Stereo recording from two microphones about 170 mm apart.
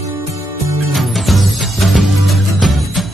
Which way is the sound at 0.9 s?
Centre (ahead or behind).